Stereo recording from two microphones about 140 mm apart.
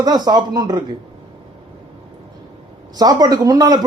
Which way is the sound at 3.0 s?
30° right (ahead or behind).